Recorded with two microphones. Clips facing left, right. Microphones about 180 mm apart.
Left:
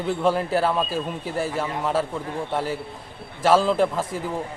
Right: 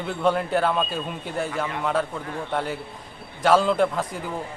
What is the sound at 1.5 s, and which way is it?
Speech, 30° left (ahead or behind).